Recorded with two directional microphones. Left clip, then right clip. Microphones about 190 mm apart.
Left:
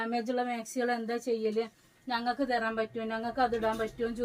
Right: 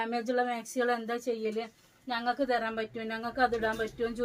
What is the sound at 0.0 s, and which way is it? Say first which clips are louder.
A woman's voice: right 2 dB; 15° right (ahead or behind).